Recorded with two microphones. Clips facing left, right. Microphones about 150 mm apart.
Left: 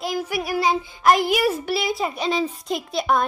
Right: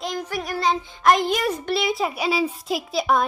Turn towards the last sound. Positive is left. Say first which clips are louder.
# even
turn(degrees=0)  # may be behind; listen again after turning